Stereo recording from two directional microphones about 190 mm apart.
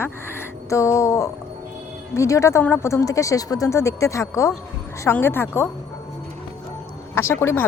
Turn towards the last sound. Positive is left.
turn(degrees=15)  # may be behind; listen again after turning